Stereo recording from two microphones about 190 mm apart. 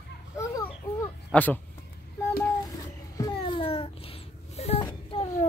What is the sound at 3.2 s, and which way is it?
Babbling, 25° left (ahead or behind).